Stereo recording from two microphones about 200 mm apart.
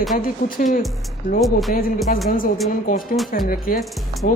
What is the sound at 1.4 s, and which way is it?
Speech, centre (ahead or behind).